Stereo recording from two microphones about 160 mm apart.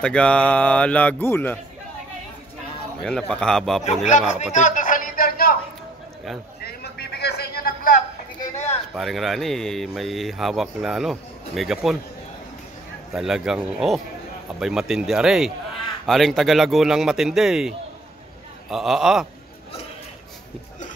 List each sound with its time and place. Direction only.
0.0 s speech: 5° left (ahead or behind)
3.0 s speech: 5° left (ahead or behind)
4.1 s a sound: 50° left (ahead or behind); by 5.6 s 65° left (ahead or behind)
6.6 s a sound: 90° left; by 7.9 s 70° left (ahead or behind)
8.9 s speech: centre (ahead or behind)
13.1 s speech: 5° right (ahead or behind)